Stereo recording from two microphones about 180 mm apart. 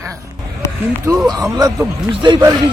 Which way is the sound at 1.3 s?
20° right (ahead or behind).